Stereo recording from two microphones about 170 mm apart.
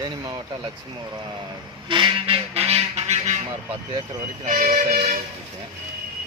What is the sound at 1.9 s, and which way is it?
Goose, 30° right (ahead or behind).